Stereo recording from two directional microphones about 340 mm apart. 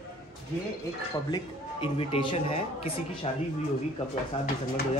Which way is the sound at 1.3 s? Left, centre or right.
Centre.